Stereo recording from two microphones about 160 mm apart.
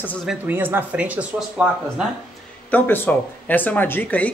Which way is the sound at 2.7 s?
10° left (ahead or behind).